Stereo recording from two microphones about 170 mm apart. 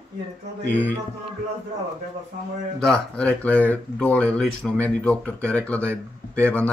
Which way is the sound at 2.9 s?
5° left (ahead or behind).